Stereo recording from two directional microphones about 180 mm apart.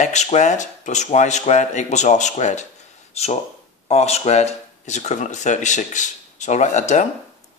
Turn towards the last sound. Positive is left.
turn(degrees=40)  # may be behind; listen again after turning